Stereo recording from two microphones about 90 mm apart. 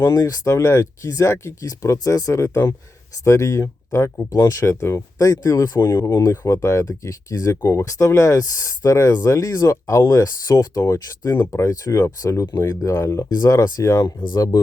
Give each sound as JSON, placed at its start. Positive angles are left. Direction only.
{"t": 0.0, "sound": "speech", "side_deg": 40}
{"t": 4.6, "sound": "speech", "side_deg": 30}